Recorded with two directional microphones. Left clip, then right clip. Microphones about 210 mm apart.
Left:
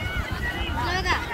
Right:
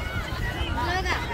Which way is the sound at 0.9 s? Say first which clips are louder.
Left 3 dB; 50° left (ahead or behind).